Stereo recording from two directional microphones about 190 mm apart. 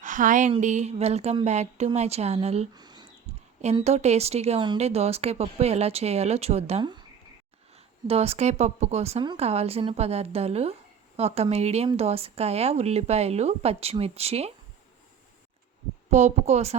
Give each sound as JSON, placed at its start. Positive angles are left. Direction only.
{"t": 0.0, "sound": "speech", "side_deg": -45}
{"t": 2.7, "sound": "a sound", "side_deg": -20}
{"t": 3.8, "sound": "speech", "side_deg": -35}
{"t": 8.0, "sound": "speech", "side_deg": -30}
{"t": 16.0, "sound": "speech", "side_deg": -40}